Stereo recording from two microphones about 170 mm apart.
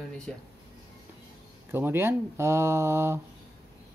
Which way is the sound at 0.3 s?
5° left (ahead or behind).